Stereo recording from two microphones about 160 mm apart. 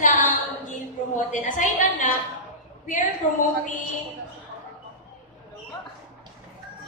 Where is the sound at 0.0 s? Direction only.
55° left (ahead or behind).